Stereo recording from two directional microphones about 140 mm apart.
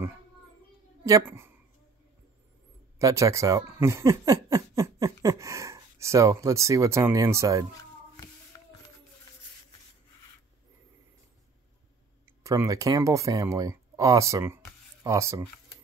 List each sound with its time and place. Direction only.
1.0 s speech: 20° right (ahead or behind)
3.0 s speech: 20° right (ahead or behind)
12.3 s speech: 20° right (ahead or behind)